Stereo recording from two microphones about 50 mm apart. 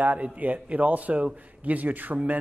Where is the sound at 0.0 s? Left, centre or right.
Right.